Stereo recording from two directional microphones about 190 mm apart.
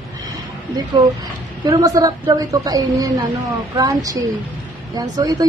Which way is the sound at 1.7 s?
15° right (ahead or behind).